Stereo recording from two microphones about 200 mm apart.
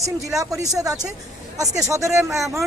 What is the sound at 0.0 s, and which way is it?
A woman's voice, 15° right (ahead or behind).